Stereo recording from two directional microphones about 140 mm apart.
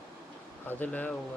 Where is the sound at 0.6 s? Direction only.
10° left (ahead or behind).